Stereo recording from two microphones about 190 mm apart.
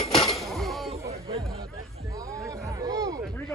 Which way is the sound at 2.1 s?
15° right (ahead or behind).